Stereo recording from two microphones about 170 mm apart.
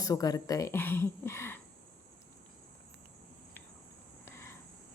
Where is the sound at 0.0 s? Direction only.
20° left (ahead or behind).